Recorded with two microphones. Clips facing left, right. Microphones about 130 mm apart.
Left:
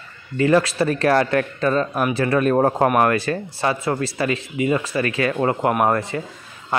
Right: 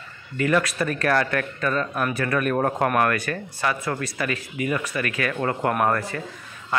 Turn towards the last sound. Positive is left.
turn(degrees=20)  # may be behind; listen again after turning